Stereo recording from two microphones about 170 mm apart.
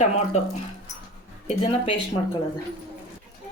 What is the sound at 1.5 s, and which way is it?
Speech, 35° left (ahead or behind).